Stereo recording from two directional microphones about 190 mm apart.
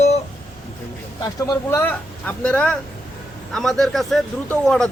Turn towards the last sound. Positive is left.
turn(degrees=5)  # may be behind; listen again after turning